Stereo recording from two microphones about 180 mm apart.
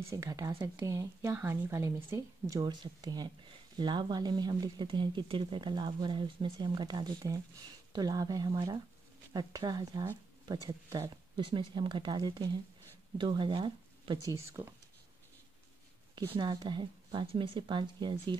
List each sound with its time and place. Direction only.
0.1 s a woman's voice: 20° right (ahead or behind)
16.2 s a woman's voice: 25° right (ahead or behind)